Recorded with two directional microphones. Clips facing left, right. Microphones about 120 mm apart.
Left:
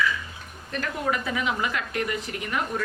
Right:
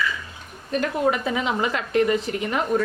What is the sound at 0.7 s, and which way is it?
A woman's voice, 20° right (ahead or behind).